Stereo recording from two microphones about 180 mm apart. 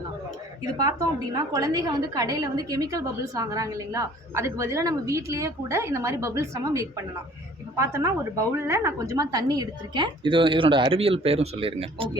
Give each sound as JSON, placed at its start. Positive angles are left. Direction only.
{"t": 0.8, "sound": "a woman's voice", "side_deg": -20}